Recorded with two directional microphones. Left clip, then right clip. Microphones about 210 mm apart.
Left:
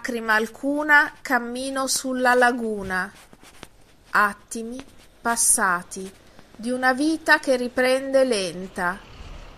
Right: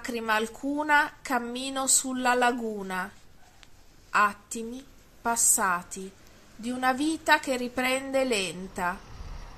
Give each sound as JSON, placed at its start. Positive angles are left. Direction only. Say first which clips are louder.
{"t": 0.0, "sound": "a woman's voice", "louder": "left 5 dB", "side_deg": 15}
{"t": 4.1, "sound": "a woman's voice", "louder": "left 4 dB", "side_deg": 20}